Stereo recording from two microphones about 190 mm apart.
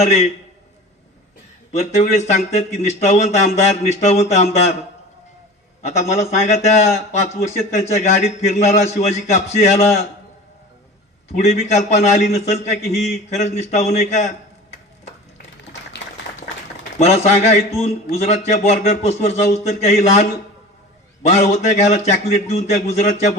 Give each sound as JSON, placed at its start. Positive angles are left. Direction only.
{"t": 0.0, "sound": "a man's voice", "side_deg": 35}
{"t": 2.8, "sound": "a man's voice", "side_deg": 35}
{"t": 5.8, "sound": "a man's voice", "side_deg": 35}
{"t": 11.3, "sound": "a man's voice", "side_deg": 35}
{"t": 17.0, "sound": "a man's voice", "side_deg": 35}
{"t": 21.3, "sound": "a man's voice", "side_deg": 35}